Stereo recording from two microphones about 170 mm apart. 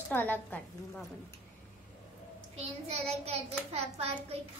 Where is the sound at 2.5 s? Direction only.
35° right (ahead or behind).